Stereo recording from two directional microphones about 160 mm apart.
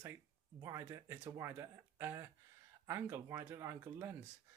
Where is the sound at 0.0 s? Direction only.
15° right (ahead or behind).